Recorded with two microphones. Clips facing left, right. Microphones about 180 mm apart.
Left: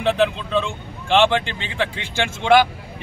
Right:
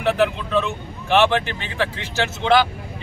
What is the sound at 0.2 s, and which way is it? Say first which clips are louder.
A man's voice: even; 15° left (ahead or behind).